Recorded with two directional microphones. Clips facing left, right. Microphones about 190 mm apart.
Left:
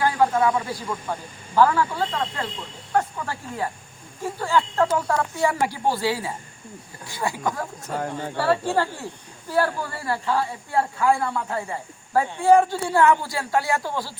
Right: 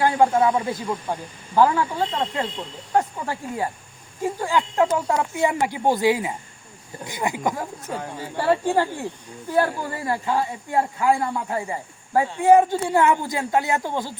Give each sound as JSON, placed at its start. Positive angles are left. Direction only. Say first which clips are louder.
{"t": 0.0, "sound": "speech", "louder": "right 2 dB", "side_deg": -25}